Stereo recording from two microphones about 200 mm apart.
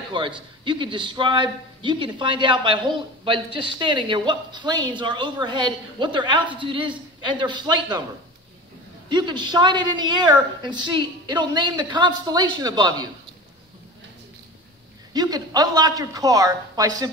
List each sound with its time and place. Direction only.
0.2 s a woman's voice: 25° right (ahead or behind)
9.1 s a woman's voice: 20° right (ahead or behind)
15.1 s a woman's voice: 20° right (ahead or behind)